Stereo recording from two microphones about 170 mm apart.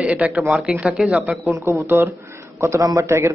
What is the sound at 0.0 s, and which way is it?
Speech, 10° right (ahead or behind).